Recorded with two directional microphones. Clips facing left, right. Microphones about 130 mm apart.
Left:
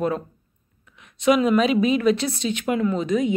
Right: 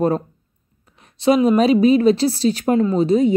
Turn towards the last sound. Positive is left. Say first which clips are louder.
# right 6 dB
turn(degrees=-35)  # may be behind; listen again after turning